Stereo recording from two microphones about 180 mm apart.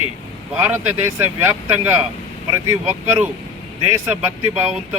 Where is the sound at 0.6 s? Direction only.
10° right (ahead or behind).